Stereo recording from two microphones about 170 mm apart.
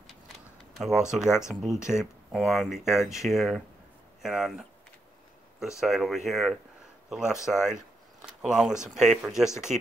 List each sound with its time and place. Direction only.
0.7 s speech: centre (ahead or behind)
9.7 s speech: 45° right (ahead or behind)